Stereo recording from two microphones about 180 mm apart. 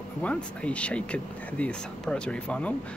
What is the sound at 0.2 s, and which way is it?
Speech, 5° left (ahead or behind).